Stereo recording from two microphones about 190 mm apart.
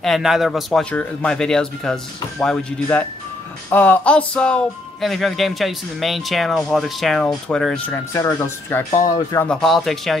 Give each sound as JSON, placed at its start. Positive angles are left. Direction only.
{"t": 0.0, "sound": "speech", "side_deg": 0}
{"t": 8.9, "sound": "speech", "side_deg": 40}
{"t": 9.3, "sound": "speech", "side_deg": 10}
{"t": 9.6, "sound": "speech", "side_deg": 0}